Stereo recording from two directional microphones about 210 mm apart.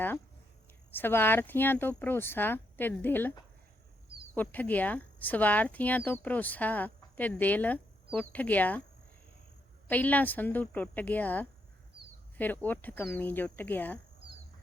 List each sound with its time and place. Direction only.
0.9 s speech: 10° left (ahead or behind)
4.4 s speech: 10° left (ahead or behind)
9.9 s speech: 10° left (ahead or behind)